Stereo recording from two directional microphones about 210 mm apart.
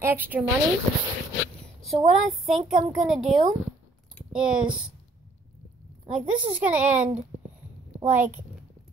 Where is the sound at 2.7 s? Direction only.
40° right (ahead or behind).